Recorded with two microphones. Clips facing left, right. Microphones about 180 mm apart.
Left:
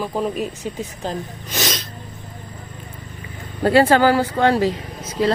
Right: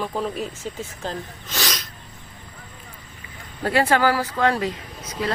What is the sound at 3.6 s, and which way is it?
Speech, 30° left (ahead or behind).